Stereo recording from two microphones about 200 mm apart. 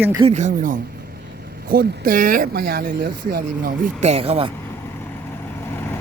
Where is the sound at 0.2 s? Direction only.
35° right (ahead or behind); by 3.7 s 50° right (ahead or behind).